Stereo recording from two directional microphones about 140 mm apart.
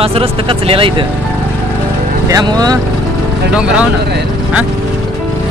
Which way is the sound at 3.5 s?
10° right (ahead or behind).